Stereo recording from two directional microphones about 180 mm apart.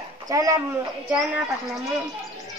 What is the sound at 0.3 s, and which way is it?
Speech, 20° right (ahead or behind).